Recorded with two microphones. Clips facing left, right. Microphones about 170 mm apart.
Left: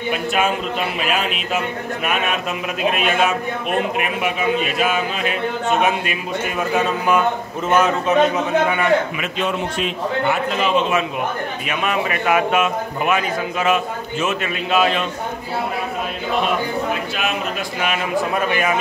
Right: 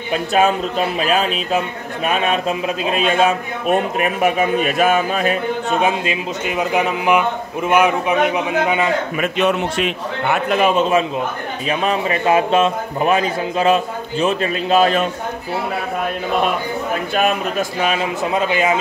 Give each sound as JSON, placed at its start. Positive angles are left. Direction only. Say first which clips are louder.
{"t": 0.1, "sound": "a man's voice", "louder": "right 5 dB", "side_deg": -35}
{"t": 5.8, "sound": "a man's voice", "louder": "right 1 dB", "side_deg": -25}
{"t": 9.4, "sound": "a man's voice", "louder": "right 4 dB", "side_deg": -75}
{"t": 11.7, "sound": "a man's voice", "louder": "right 3 dB", "side_deg": -30}
{"t": 17.1, "sound": "a man's voice", "louder": "right 5 dB", "side_deg": -50}
{"t": 17.8, "sound": "speech", "louder": "left 2 dB", "side_deg": -25}